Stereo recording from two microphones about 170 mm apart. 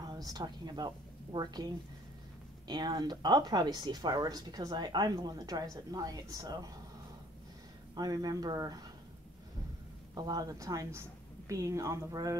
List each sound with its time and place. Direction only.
0.0 s a woman's voice: 20° right (ahead or behind)
2.7 s speech: 25° right (ahead or behind)
7.9 s speech: 25° right (ahead or behind)
10.1 s speech: 25° right (ahead or behind)